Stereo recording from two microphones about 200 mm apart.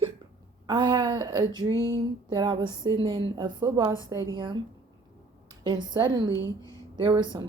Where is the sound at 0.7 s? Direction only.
20° right (ahead or behind).